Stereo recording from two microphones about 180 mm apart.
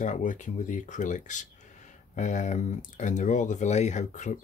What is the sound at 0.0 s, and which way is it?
Speech, 45° left (ahead or behind).